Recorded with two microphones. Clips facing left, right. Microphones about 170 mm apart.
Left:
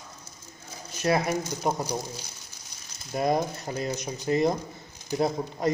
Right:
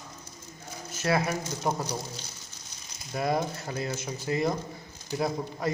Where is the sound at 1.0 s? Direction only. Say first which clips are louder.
Left 2 dB; 20° left (ahead or behind).